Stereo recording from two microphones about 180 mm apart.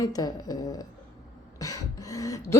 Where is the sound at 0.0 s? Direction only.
20° left (ahead or behind).